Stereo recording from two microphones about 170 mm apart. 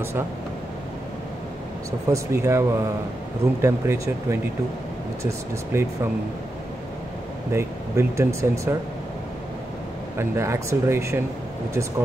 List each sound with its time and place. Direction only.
1.9 s speech: 20° right (ahead or behind)
3.6 s speech: 15° right (ahead or behind)
7.5 s speech: 15° right (ahead or behind)
10.1 s speech: 15° right (ahead or behind)